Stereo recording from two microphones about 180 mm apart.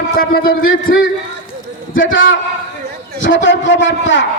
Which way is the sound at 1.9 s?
90° left.